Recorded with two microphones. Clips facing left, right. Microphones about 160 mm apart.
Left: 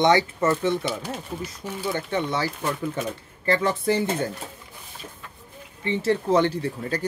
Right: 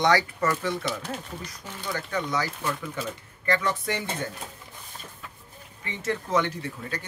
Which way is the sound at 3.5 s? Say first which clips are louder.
Left 5 dB; 30° left (ahead or behind).